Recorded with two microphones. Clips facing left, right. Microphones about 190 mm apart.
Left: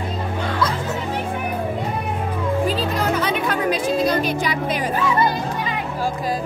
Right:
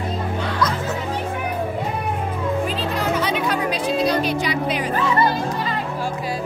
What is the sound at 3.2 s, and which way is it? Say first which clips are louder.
Music: even; 50° left (ahead or behind).